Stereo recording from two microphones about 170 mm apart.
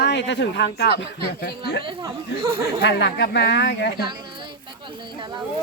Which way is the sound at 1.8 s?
25° right (ahead or behind).